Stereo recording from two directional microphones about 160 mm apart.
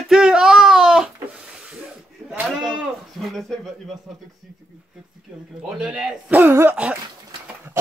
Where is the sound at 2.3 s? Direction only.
5° right (ahead or behind).